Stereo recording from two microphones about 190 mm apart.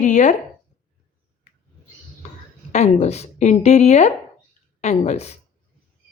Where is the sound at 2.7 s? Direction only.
35° left (ahead or behind).